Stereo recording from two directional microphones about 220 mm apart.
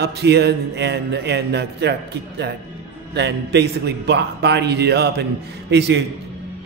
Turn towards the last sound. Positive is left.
turn(degrees=-50)  # may be behind; listen again after turning